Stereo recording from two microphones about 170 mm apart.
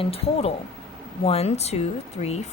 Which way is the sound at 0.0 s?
35° left (ahead or behind).